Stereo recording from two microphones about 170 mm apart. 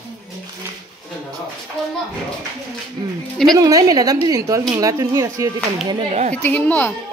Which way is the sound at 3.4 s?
20° right (ahead or behind).